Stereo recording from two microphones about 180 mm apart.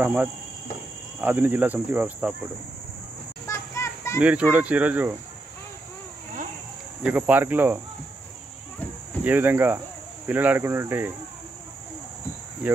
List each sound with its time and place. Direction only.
0.0 s cricket: 10° right (ahead or behind)
3.4 s music: 15° left (ahead or behind)
4.2 s cricket: 10° right (ahead or behind)
7.0 s cricket: 10° right (ahead or behind)
9.2 s cricket: 10° right (ahead or behind)